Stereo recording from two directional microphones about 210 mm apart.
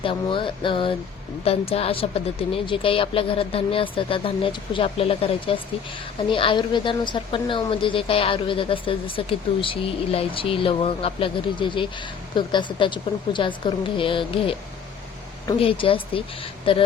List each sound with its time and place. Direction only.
0.0 s speech: 25° left (ahead or behind)